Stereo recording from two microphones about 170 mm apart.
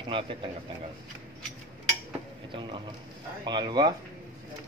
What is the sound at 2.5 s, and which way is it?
A man's voice, 30° right (ahead or behind).